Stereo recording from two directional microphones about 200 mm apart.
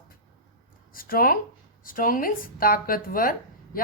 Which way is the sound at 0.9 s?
45° left (ahead or behind).